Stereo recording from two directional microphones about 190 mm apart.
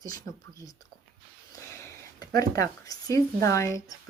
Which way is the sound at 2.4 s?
20° left (ahead or behind).